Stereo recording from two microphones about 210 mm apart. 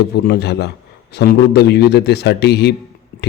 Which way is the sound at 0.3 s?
50° left (ahead or behind).